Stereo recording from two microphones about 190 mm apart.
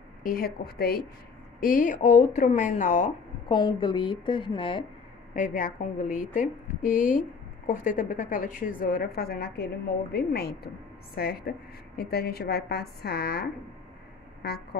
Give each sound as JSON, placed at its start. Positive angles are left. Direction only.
{"t": 0.2, "sound": "a woman's voice", "side_deg": 50}
{"t": 3.5, "sound": "a woman's voice", "side_deg": 25}
{"t": 5.3, "sound": "a woman's voice", "side_deg": 45}